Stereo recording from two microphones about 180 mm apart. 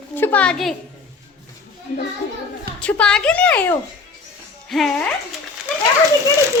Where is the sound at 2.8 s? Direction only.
5° left (ahead or behind).